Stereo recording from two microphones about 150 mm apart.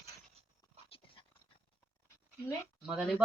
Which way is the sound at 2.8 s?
5° right (ahead or behind).